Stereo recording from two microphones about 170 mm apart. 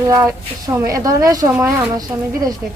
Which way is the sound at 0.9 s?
20° right (ahead or behind).